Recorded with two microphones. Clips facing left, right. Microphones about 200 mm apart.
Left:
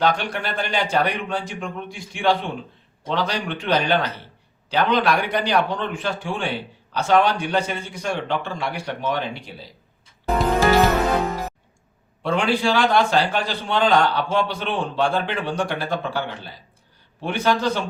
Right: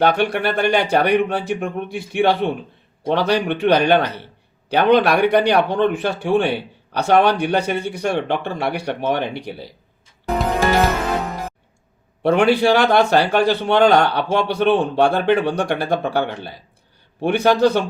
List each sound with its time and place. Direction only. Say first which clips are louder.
0.0 s a man's voice: right 5 dB; 60° right (ahead or behind)
12.2 s a man's voice: right 6 dB; 65° right (ahead or behind)